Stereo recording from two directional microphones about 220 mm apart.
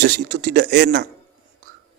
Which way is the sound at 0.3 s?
45° right (ahead or behind).